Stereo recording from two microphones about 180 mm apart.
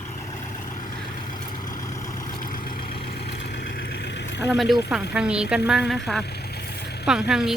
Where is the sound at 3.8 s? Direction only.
70° left (ahead or behind).